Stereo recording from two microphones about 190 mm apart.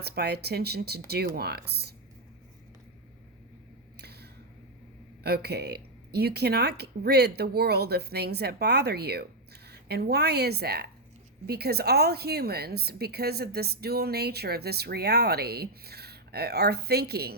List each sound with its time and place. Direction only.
0.0 s a woman's voice: 55° right (ahead or behind)
3.9 s a sound: 60° right (ahead or behind)
5.2 s a woman's voice: 55° right (ahead or behind)